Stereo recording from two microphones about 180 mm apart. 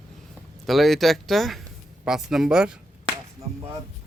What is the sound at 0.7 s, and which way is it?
Speech, centre (ahead or behind).